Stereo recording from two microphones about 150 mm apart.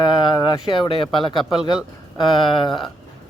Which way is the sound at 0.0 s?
30° left (ahead or behind).